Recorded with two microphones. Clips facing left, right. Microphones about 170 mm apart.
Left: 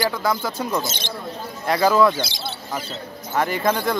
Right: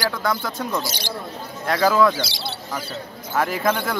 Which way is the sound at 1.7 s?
Centre (ahead or behind).